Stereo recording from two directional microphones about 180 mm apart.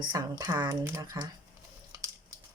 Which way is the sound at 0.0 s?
20° right (ahead or behind).